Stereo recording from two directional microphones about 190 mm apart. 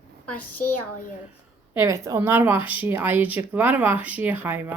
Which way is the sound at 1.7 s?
15° right (ahead or behind).